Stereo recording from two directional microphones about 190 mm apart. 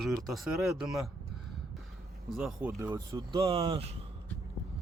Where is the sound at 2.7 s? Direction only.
15° right (ahead or behind).